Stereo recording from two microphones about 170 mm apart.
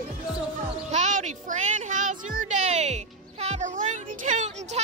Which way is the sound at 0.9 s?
45° right (ahead or behind).